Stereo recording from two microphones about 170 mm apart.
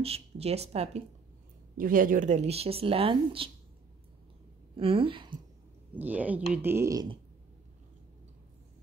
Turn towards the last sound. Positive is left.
turn(degrees=-20)  # may be behind; listen again after turning